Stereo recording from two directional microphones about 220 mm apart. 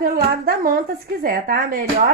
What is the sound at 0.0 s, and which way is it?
A woman's voice, 40° right (ahead or behind).